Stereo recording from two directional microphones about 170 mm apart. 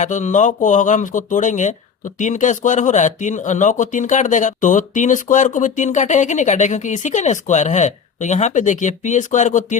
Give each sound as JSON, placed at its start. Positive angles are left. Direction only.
{"t": 0.0, "sound": "speech", "side_deg": 45}